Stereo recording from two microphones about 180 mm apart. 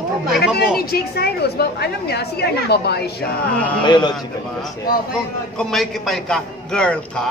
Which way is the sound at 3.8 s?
25° left (ahead or behind).